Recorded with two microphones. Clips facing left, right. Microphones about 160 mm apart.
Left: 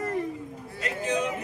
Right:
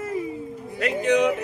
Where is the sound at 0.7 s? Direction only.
65° right (ahead or behind).